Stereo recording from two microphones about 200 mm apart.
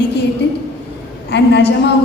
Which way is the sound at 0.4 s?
55° left (ahead or behind).